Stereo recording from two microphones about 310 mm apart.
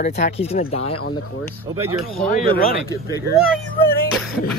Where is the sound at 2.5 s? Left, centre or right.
Centre.